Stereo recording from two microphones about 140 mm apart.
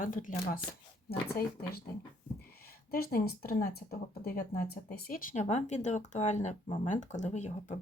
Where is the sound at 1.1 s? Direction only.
90° left.